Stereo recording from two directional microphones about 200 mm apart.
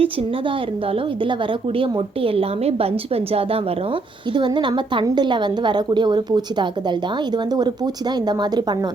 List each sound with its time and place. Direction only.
0.0 s a woman's voice: 30° right (ahead or behind)
8.3 s a woman's voice: 20° right (ahead or behind)